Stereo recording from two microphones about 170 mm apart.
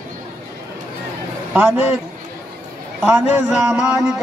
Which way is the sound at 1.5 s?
10° right (ahead or behind).